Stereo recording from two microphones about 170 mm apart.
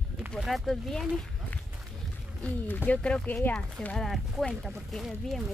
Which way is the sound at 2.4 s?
10° left (ahead or behind).